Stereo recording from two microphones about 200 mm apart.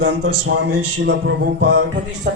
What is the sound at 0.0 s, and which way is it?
A man's voice, 55° right (ahead or behind).